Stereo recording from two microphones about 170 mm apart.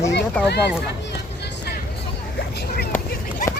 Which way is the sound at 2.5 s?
65° left (ahead or behind).